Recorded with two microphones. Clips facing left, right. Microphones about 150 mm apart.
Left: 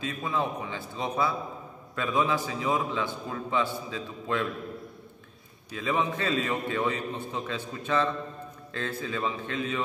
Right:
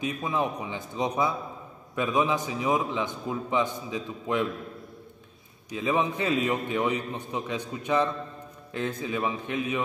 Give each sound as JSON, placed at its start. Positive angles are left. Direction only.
{"t": 0.0, "sound": "a man's voice", "side_deg": -15}
{"t": 5.7, "sound": "a man's voice", "side_deg": -20}